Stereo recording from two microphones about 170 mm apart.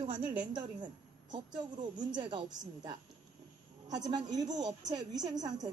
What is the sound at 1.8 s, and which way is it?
A woman's voice, 25° right (ahead or behind).